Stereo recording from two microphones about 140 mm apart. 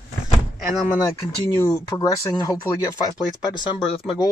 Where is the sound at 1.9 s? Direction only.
25° left (ahead or behind).